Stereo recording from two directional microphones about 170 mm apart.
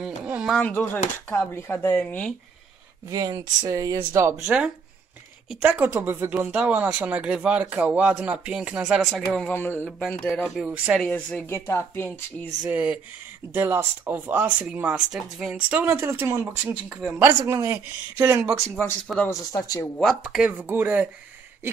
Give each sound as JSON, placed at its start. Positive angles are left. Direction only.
{"t": 0.0, "sound": "a sound", "side_deg": -5}
{"t": 0.6, "sound": "speech", "side_deg": 10}
{"t": 3.1, "sound": "speech", "side_deg": -20}
{"t": 11.1, "sound": "speech", "side_deg": 10}
{"t": 12.6, "sound": "speech", "side_deg": -10}
{"t": 17.2, "sound": "speech", "side_deg": -15}
{"t": 18.6, "sound": "speech", "side_deg": 5}
{"t": 19.3, "sound": "speech", "side_deg": 20}
{"t": 20.0, "sound": "speech", "side_deg": 0}